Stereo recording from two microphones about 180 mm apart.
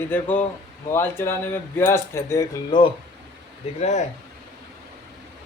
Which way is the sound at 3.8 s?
40° left (ahead or behind).